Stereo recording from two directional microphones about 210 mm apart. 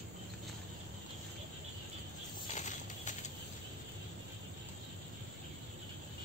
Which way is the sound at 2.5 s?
35° left (ahead or behind).